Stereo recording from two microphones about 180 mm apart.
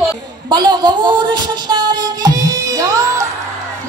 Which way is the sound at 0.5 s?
25° right (ahead or behind).